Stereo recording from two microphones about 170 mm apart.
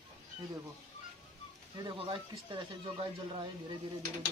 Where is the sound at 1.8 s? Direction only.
30° right (ahead or behind).